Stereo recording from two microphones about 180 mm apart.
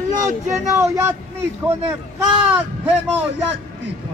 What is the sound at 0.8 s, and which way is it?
Speech, 15° right (ahead or behind).